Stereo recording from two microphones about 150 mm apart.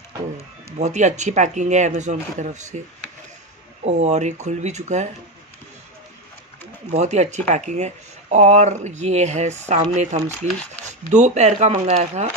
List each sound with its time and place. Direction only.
0.7 s speech: 50° right (ahead or behind)
6.9 s speech: 50° right (ahead or behind)